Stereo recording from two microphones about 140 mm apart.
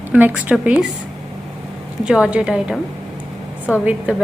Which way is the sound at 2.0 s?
5° right (ahead or behind).